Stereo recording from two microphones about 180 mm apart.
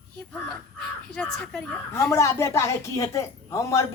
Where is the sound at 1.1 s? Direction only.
5° left (ahead or behind).